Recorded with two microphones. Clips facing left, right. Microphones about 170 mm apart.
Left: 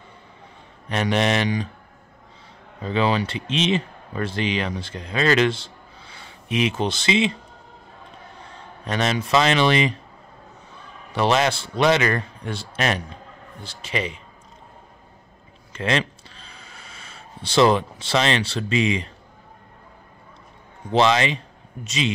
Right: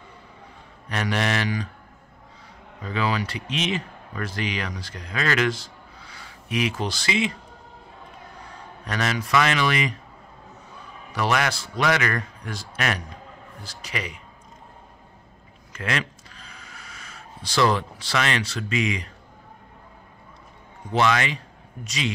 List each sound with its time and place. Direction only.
0.8 s a man's voice: 20° left (ahead or behind)
2.8 s speech: 25° left (ahead or behind)
8.8 s a man's voice: 25° left (ahead or behind)
11.1 s a man's voice: 25° left (ahead or behind)
15.7 s a sound: 25° left (ahead or behind)
20.9 s a man's voice: 25° left (ahead or behind)